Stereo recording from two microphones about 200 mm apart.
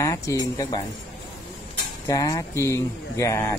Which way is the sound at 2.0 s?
20° left (ahead or behind).